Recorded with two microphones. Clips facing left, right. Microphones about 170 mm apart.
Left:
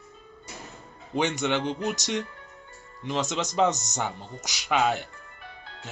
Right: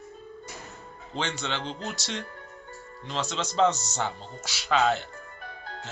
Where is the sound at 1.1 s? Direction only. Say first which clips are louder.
Left 6 dB; 15° left (ahead or behind).